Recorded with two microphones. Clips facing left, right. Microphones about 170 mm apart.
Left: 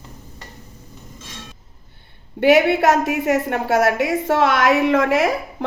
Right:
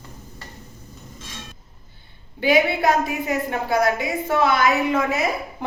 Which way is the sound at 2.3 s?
70° left (ahead or behind).